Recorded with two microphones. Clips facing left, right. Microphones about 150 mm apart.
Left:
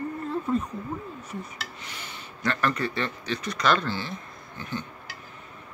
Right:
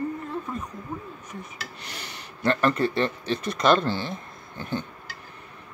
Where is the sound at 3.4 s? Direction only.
55° right (ahead or behind).